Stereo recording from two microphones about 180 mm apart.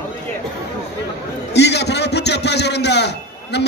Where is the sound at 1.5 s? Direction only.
70° left (ahead or behind).